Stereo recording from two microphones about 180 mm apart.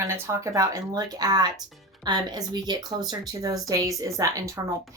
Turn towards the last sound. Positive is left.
turn(degrees=-20)  # may be behind; listen again after turning